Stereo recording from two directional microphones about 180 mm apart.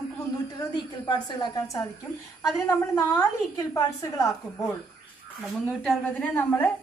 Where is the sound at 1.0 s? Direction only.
25° left (ahead or behind).